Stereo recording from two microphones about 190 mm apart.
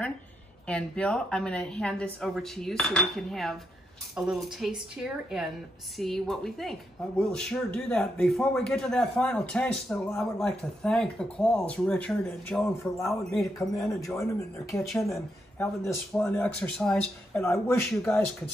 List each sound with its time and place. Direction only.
0.7 s speech: 5° left (ahead or behind)
14.0 s speech: 15° left (ahead or behind)